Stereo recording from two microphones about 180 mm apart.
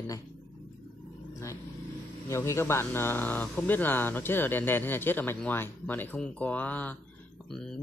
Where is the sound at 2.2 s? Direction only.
15° left (ahead or behind).